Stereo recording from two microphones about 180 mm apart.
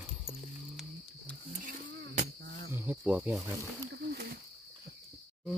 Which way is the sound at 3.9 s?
65° right (ahead or behind).